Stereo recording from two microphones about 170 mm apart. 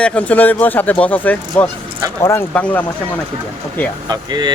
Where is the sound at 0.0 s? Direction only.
10° left (ahead or behind).